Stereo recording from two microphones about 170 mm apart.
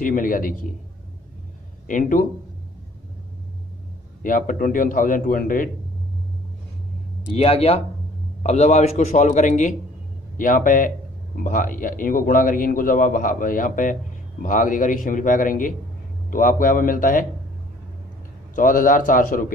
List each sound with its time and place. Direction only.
0.0 s a man's voice: 55° left (ahead or behind)
1.9 s a man's voice: 50° left (ahead or behind)
4.2 s a man's voice: 50° left (ahead or behind)
7.3 s a man's voice: 35° left (ahead or behind); by 17.3 s 55° left (ahead or behind)
18.5 s a man's voice: 50° left (ahead or behind)